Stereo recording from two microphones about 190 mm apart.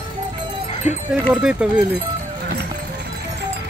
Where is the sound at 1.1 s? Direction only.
5° right (ahead or behind).